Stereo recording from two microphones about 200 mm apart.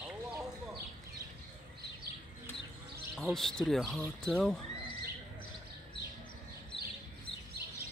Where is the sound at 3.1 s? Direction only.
Centre (ahead or behind).